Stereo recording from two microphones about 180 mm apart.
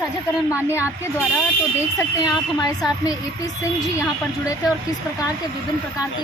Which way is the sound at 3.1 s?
20° left (ahead or behind).